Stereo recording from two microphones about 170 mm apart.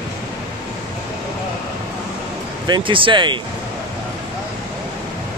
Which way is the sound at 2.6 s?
25° right (ahead or behind).